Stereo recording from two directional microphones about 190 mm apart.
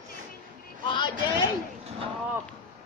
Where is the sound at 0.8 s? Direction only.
25° left (ahead or behind).